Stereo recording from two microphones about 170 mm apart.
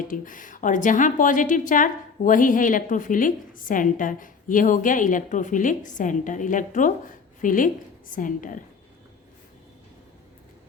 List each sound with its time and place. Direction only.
0.1 s a woman's voice: 50° left (ahead or behind)